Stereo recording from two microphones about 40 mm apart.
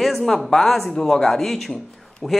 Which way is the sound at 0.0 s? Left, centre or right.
Centre.